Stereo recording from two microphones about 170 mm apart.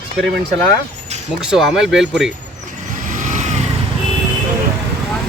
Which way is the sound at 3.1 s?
50° right (ahead or behind).